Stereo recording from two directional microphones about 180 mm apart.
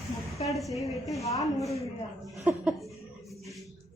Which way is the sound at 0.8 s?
15° left (ahead or behind).